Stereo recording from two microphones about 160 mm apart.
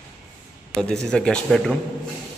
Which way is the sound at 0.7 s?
5° left (ahead or behind).